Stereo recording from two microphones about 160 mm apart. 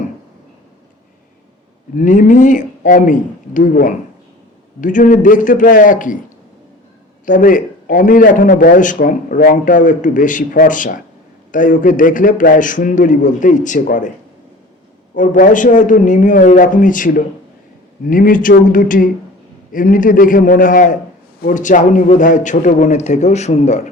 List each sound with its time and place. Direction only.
2.0 s a man's voice: 50° left (ahead or behind)
7.3 s a man's voice: 55° left (ahead or behind)
15.1 s a man's voice: 55° left (ahead or behind)